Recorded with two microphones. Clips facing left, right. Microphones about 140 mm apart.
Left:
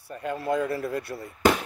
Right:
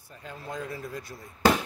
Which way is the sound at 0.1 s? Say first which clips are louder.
Left 11 dB; 65° left (ahead or behind).